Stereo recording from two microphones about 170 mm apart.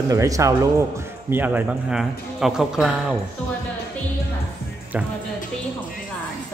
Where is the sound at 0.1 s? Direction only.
20° right (ahead or behind); by 3.2 s 5° right (ahead or behind).